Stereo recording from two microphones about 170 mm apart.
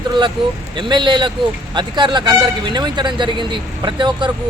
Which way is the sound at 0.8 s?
25° right (ahead or behind).